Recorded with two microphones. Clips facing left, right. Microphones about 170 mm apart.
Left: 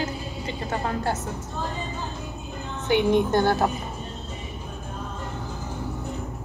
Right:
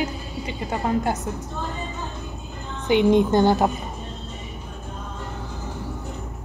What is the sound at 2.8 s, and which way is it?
Speech, 15° right (ahead or behind).